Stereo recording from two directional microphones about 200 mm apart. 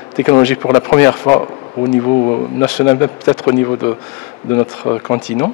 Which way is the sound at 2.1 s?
30° left (ahead or behind).